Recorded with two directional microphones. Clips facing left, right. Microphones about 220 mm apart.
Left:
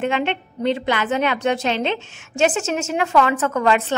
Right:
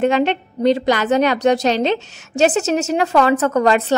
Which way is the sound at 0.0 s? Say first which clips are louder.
Right 6 dB; 40° right (ahead or behind).